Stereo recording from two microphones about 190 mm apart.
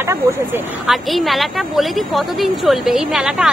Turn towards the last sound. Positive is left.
turn(degrees=0)  # may be behind; listen again after turning